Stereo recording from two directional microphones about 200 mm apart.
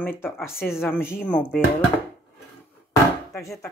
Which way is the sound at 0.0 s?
10° left (ahead or behind).